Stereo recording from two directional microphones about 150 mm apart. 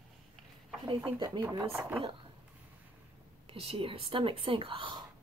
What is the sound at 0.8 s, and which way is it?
Speech, 30° right (ahead or behind).